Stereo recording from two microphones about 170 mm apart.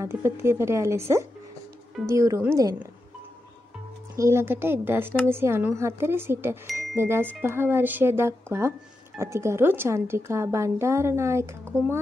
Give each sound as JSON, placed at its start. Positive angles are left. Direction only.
{"t": 0.0, "sound": "a woman's voice", "side_deg": -15}
{"t": 4.2, "sound": "a woman's voice", "side_deg": -15}